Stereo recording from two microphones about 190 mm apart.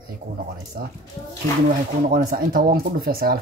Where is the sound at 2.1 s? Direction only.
50° right (ahead or behind).